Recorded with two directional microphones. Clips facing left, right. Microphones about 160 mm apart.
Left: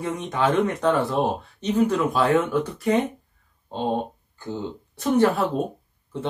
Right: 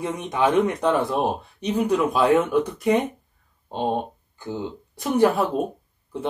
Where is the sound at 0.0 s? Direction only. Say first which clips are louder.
Right 1 dB; 15° right (ahead or behind).